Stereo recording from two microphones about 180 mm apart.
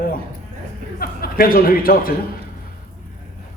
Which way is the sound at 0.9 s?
55° left (ahead or behind).